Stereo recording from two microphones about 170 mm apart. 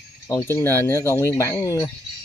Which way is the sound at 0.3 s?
15° left (ahead or behind).